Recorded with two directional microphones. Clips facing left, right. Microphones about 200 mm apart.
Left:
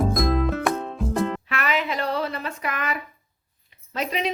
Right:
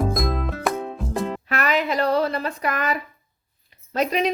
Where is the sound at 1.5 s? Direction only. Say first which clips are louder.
Right 3 dB; 40° right (ahead or behind).